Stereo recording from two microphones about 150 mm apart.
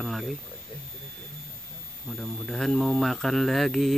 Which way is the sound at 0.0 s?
Centre (ahead or behind).